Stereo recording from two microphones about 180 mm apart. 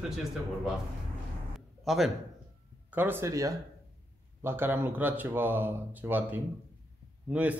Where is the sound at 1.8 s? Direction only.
Centre (ahead or behind).